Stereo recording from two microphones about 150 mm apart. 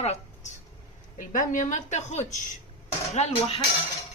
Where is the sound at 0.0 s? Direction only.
45° left (ahead or behind).